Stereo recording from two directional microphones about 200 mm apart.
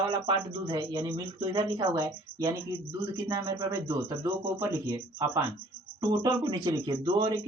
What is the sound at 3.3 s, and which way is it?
Speech, 20° right (ahead or behind).